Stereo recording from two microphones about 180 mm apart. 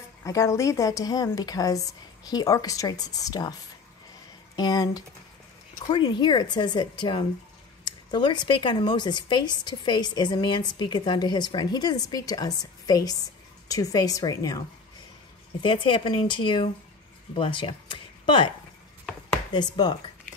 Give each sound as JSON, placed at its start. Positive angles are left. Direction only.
{"t": 0.2, "sound": "speech", "side_deg": 15}
{"t": 4.6, "sound": "speech", "side_deg": 20}
{"t": 15.6, "sound": "speech", "side_deg": 25}
{"t": 19.5, "sound": "speech", "side_deg": 25}